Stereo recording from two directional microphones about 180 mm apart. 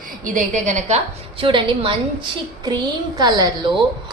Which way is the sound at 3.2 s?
20° right (ahead or behind).